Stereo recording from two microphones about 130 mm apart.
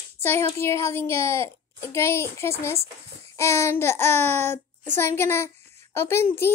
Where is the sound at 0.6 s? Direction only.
20° left (ahead or behind).